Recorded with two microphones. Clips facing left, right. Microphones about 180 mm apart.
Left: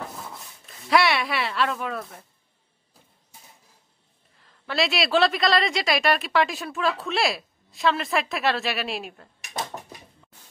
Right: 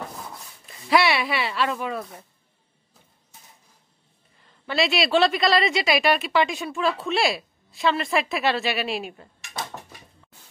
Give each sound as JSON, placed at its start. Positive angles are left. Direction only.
{"t": 0.7, "sound": "a woman's voice", "side_deg": 0}
{"t": 4.4, "sound": "a woman's voice", "side_deg": 0}